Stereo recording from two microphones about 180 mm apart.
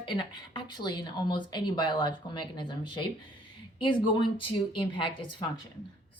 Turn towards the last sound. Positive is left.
turn(degrees=25)  # may be behind; listen again after turning